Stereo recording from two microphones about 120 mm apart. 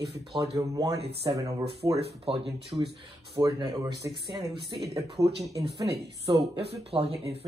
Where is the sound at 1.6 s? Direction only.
55° right (ahead or behind).